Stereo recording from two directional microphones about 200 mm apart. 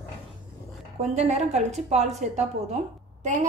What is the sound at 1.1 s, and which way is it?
A woman's voice, 35° right (ahead or behind).